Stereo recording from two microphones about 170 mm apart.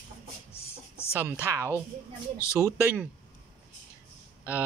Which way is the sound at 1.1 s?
10° right (ahead or behind).